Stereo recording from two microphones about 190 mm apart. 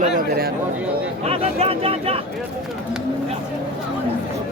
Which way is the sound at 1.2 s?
30° right (ahead or behind).